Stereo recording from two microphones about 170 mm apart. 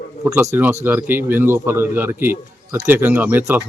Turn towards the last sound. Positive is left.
turn(degrees=-10)  # may be behind; listen again after turning